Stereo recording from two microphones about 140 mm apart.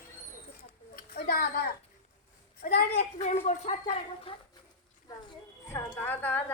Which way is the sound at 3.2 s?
45° left (ahead or behind).